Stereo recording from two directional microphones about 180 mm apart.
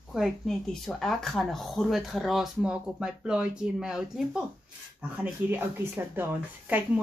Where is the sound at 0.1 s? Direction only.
Centre (ahead or behind).